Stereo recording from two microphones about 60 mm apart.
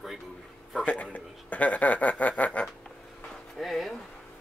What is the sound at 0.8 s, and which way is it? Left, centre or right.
Speech, left.